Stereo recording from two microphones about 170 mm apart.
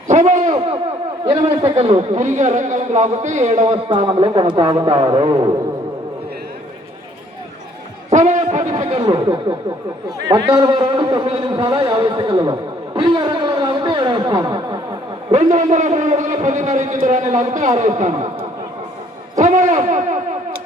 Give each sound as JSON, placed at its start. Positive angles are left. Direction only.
{"t": 0.1, "sound": "a man's voice", "side_deg": -45}
{"t": 1.2, "sound": "a man's voice", "side_deg": -25}
{"t": 1.7, "sound": "speech", "side_deg": -35}
{"t": 8.1, "sound": "a sound", "side_deg": -45}
{"t": 10.2, "sound": "a man's voice", "side_deg": -20}
{"t": 15.5, "sound": "a man's voice", "side_deg": -45}
{"t": 19.4, "sound": "a sound", "side_deg": -45}